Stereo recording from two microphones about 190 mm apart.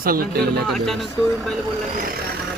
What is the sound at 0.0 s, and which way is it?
Speech, 50° right (ahead or behind).